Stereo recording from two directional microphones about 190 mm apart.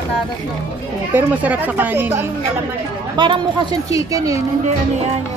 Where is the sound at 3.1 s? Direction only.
25° right (ahead or behind).